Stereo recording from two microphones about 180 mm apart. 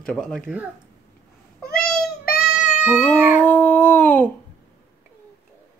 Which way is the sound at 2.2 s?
55° left (ahead or behind).